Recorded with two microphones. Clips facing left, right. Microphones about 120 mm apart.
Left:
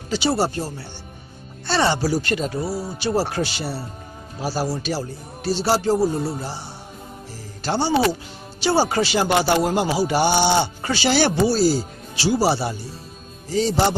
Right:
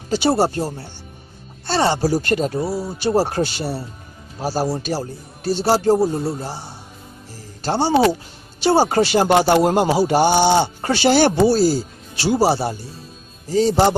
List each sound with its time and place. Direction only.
0.1 s speech: 50° right (ahead or behind)
7.6 s speech: 40° right (ahead or behind)